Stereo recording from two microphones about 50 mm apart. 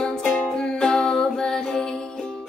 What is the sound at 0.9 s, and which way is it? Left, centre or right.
Music, centre.